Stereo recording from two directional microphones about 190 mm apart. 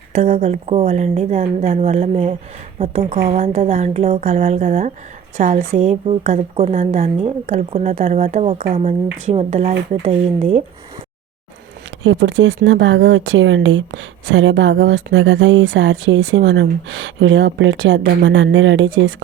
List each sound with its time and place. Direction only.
0.1 s a woman's voice: 40° right (ahead or behind)
3.0 s a woman's voice: 50° right (ahead or behind)
3.2 s speech: 35° right (ahead or behind)
12.0 s speech: 80° right